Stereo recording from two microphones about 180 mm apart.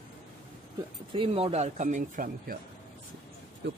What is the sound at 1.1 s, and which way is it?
Speech, 30° right (ahead or behind).